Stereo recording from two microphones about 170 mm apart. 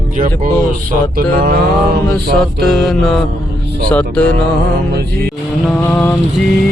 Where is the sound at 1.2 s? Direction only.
55° right (ahead or behind).